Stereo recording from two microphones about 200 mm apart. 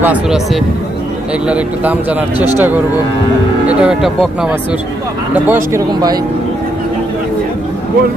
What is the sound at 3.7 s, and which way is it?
Speech, 5° right (ahead or behind).